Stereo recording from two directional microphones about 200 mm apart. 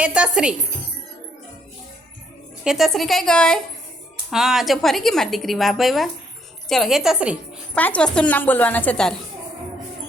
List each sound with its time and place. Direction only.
0.0 s a woman's voice: 5° right (ahead or behind)
2.6 s a woman's voice: centre (ahead or behind)
7.8 s a woman's voice: 5° left (ahead or behind)